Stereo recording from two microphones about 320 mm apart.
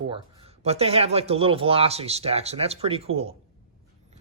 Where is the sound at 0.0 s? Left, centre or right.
Centre.